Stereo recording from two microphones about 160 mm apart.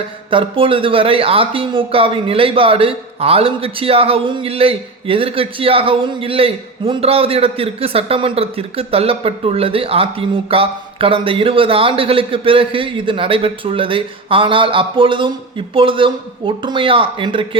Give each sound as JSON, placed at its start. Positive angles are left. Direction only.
{"t": 0.3, "sound": "speech", "side_deg": -35}